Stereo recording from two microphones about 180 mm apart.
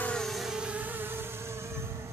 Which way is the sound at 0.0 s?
5° left (ahead or behind).